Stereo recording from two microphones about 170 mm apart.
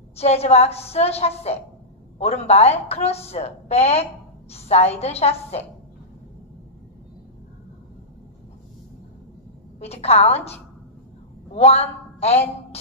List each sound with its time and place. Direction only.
0.1 s a woman's voice: 35° left (ahead or behind)
9.8 s a woman's voice: 40° left (ahead or behind)